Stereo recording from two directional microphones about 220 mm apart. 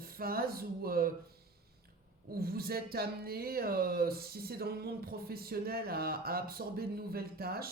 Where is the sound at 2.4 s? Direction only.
45° right (ahead or behind).